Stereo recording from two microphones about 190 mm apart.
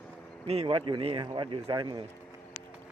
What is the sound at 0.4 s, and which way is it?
A man's voice, 30° right (ahead or behind).